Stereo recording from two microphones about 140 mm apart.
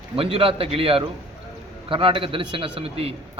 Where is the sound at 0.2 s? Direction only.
40° right (ahead or behind).